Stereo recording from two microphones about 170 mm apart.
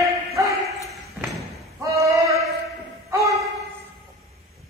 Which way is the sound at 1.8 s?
20° right (ahead or behind).